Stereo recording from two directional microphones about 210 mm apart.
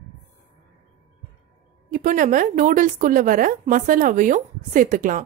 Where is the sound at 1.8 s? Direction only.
40° right (ahead or behind).